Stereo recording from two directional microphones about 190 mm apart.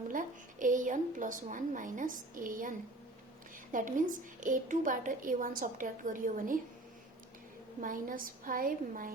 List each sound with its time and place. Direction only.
0.1 s a woman's voice: 45° right (ahead or behind)
7.8 s a woman's voice: 45° right (ahead or behind)